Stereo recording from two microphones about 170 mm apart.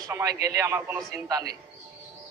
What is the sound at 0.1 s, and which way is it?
A man's voice, 20° right (ahead or behind).